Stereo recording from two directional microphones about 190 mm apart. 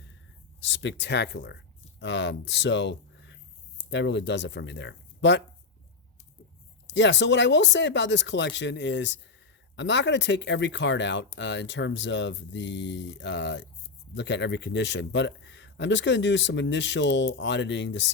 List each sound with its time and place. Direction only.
0.6 s a man's voice: 70° left (ahead or behind)
6.8 s a man's voice: 70° left (ahead or behind)